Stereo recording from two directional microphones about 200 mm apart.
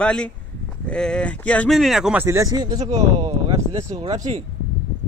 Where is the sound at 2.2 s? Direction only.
15° right (ahead or behind).